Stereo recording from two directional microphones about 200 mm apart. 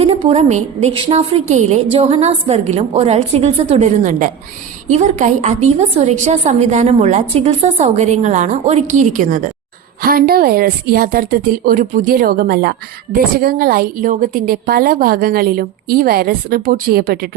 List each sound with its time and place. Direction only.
0.0 s a woman's voice: 30° right (ahead or behind)